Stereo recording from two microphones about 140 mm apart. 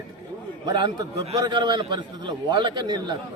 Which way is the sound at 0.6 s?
30° right (ahead or behind).